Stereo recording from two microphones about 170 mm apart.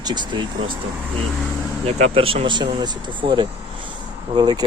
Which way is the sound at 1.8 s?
35° right (ahead or behind).